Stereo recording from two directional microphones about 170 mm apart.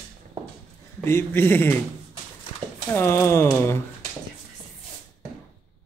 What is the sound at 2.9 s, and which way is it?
Speech, 15° left (ahead or behind).